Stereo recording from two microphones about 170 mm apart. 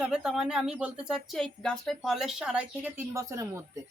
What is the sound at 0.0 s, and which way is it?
Speech, 5° right (ahead or behind).